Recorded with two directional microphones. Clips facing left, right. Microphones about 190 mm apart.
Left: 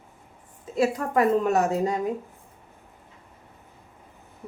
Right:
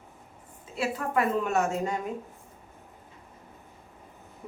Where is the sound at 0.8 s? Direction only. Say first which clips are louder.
Left 6 dB; 40° left (ahead or behind).